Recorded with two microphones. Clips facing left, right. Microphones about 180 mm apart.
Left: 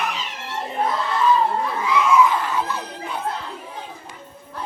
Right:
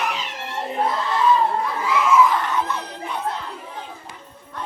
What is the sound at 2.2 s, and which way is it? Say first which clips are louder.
Screaming: even; 5° left (ahead or behind).